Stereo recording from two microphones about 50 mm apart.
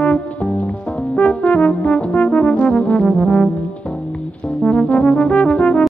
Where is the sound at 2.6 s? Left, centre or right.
Left.